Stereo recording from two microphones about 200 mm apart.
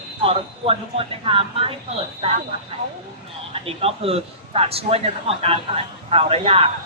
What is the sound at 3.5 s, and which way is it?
A woman's voice, 30° right (ahead or behind).